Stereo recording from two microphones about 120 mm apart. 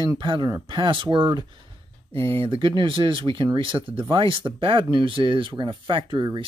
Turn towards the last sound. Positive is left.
turn(degrees=-45)  # may be behind; listen again after turning